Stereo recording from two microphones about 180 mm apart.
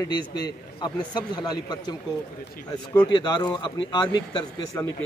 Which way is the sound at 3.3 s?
25° left (ahead or behind).